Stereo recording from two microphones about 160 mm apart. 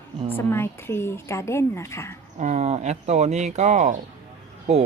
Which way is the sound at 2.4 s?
45° right (ahead or behind).